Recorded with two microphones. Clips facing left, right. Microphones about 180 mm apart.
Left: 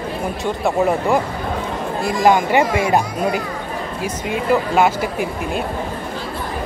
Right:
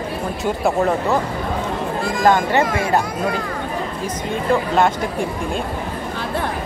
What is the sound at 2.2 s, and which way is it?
Speech, 10° left (ahead or behind).